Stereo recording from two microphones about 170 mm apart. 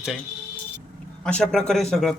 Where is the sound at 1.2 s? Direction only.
5° left (ahead or behind).